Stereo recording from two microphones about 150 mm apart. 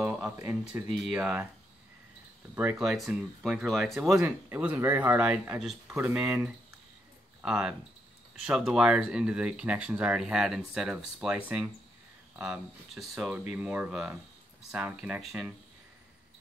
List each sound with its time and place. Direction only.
0.0 s speech: 10° right (ahead or behind)
0.8 s speech: 5° right (ahead or behind)
2.5 s speech: 15° right (ahead or behind)
2.8 s speech: centre (ahead or behind)
4.5 s speech: 15° right (ahead or behind)